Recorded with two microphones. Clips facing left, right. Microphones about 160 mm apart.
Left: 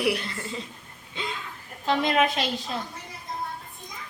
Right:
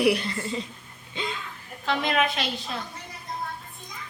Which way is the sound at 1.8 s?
40° left (ahead or behind).